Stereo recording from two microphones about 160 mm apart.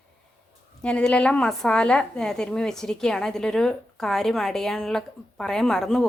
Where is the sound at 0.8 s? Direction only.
5° left (ahead or behind).